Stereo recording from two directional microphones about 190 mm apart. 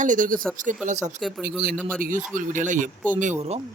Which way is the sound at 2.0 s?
45° right (ahead or behind).